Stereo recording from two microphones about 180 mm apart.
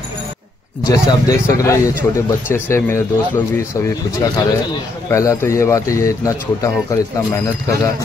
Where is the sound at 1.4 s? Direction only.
15° left (ahead or behind).